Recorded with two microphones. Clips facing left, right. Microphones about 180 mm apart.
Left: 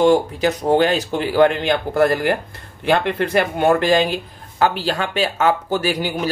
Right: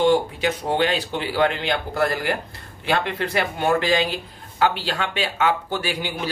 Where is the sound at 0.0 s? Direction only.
45° left (ahead or behind).